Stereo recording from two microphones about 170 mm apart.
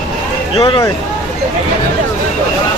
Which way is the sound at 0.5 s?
30° left (ahead or behind).